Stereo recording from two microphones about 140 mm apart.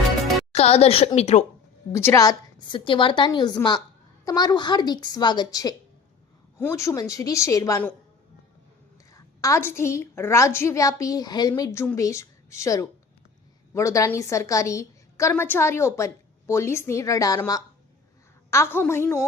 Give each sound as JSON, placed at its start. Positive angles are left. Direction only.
{"t": 0.5, "sound": "a woman's voice", "side_deg": 45}
{"t": 1.9, "sound": "a woman's voice", "side_deg": 20}
{"t": 9.1, "sound": "a woman's voice", "side_deg": 20}